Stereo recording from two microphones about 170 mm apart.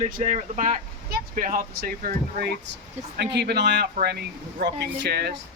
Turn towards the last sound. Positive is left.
turn(degrees=-75)  # may be behind; listen again after turning